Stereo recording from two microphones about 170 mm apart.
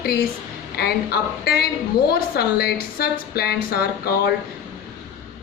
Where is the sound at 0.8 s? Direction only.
65° left (ahead or behind).